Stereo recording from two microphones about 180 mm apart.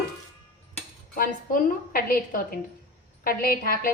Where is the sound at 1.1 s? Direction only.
50° left (ahead or behind).